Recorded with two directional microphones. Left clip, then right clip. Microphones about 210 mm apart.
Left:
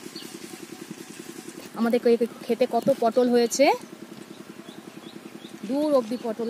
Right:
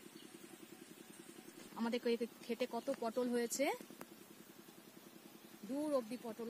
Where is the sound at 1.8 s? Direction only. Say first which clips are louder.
Left 18 dB; 25° right (ahead or behind).